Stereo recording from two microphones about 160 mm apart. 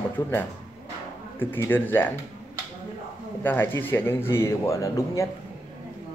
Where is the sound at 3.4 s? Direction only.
10° left (ahead or behind).